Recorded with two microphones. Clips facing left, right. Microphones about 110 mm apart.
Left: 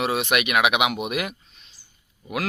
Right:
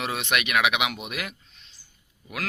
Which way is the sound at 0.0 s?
10° left (ahead or behind).